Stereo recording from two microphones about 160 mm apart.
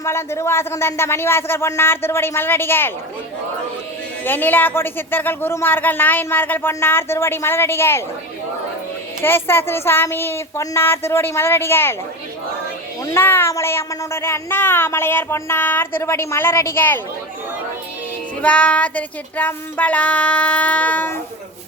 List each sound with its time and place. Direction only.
0.0 s speech: 15° left (ahead or behind)
4.2 s speech: 10° left (ahead or behind)
9.2 s speech: 15° left (ahead or behind)
13.1 s speech: 15° left (ahead or behind)
18.4 s speech: 10° left (ahead or behind)